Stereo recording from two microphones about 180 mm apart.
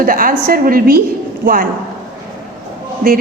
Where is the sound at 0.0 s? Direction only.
50° right (ahead or behind).